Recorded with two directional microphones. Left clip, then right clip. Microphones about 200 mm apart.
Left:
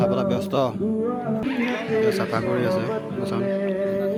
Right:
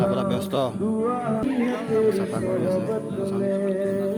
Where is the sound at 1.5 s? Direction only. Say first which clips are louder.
Left 2 dB; 55° right (ahead or behind).